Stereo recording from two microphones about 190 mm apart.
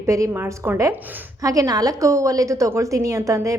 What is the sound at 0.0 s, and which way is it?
A woman's voice, 15° right (ahead or behind).